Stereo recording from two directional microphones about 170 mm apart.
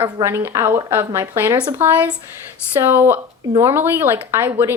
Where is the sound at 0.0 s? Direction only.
15° right (ahead or behind).